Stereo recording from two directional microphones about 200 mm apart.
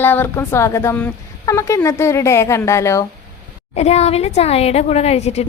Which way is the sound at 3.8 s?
35° left (ahead or behind).